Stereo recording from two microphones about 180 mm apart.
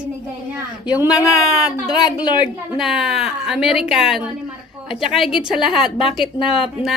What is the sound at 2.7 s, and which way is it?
Speech, centre (ahead or behind).